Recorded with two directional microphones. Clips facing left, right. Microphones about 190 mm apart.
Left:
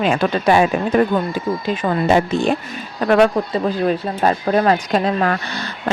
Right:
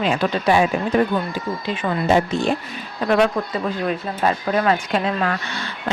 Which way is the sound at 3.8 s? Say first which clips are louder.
Left 3 dB; 35° left (ahead or behind).